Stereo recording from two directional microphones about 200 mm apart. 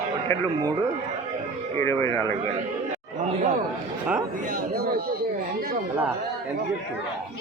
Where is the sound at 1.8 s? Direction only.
15° left (ahead or behind).